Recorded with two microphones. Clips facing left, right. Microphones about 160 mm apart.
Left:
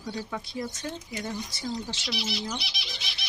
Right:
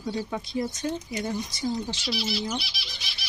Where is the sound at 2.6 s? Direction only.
20° left (ahead or behind).